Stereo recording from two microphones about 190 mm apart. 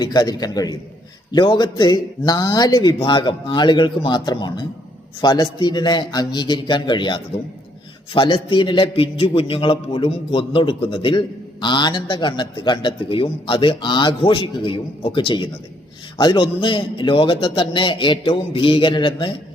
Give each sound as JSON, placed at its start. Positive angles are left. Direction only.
{"t": 0.0, "sound": "a man's voice", "side_deg": 20}